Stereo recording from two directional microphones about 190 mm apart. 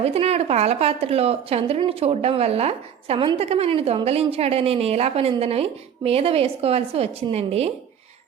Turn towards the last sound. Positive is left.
turn(degrees=-35)  # may be behind; listen again after turning